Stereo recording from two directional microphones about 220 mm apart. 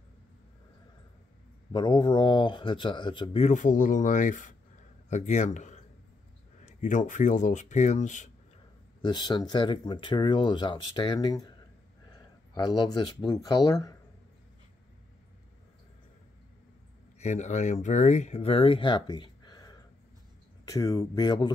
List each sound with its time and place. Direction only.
1.7 s speech: 20° left (ahead or behind)
9.0 s speech: 20° left (ahead or behind)
17.2 s speech: 30° left (ahead or behind)